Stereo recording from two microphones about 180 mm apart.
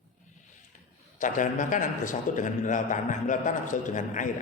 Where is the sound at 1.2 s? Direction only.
45° left (ahead or behind).